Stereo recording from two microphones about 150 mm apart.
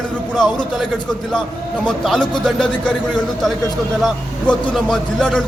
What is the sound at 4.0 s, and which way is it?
A man's voice, centre (ahead or behind).